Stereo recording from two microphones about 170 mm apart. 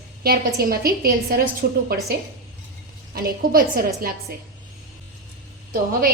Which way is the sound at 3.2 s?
60° right (ahead or behind).